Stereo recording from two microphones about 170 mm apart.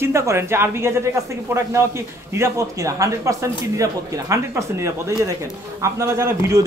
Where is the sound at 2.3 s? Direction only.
15° right (ahead or behind).